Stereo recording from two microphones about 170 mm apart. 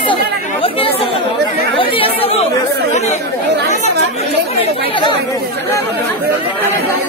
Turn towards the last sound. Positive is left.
turn(degrees=30)  # may be behind; listen again after turning